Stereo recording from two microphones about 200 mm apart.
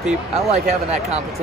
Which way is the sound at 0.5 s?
35° right (ahead or behind).